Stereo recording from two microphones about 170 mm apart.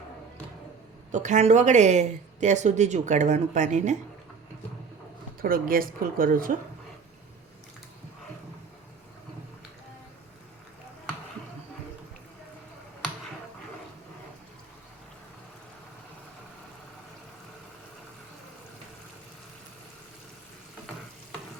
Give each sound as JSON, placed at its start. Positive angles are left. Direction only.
{"t": 1.1, "sound": "speech", "side_deg": -45}
{"t": 5.4, "sound": "speech", "side_deg": -55}